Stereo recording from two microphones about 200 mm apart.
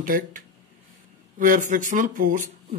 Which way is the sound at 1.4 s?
40° right (ahead or behind).